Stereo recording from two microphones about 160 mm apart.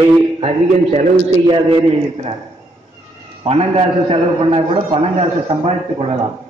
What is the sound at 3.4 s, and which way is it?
A man's voice, 40° right (ahead or behind).